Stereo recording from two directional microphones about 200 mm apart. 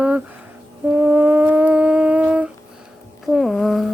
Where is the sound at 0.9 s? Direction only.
10° right (ahead or behind).